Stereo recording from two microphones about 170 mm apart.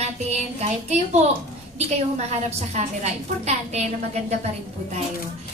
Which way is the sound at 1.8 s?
40° right (ahead or behind).